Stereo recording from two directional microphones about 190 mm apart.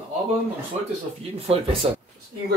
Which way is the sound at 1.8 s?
25° right (ahead or behind).